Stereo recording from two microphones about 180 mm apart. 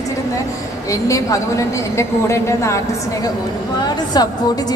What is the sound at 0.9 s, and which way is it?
A woman's voice, 20° left (ahead or behind).